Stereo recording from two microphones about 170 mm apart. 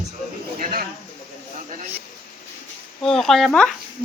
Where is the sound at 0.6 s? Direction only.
55° right (ahead or behind).